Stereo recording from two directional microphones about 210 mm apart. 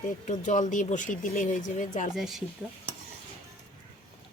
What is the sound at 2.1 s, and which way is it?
Speech, centre (ahead or behind).